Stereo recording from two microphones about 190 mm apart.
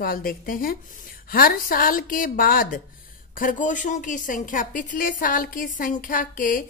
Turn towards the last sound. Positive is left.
turn(degrees=45)  # may be behind; listen again after turning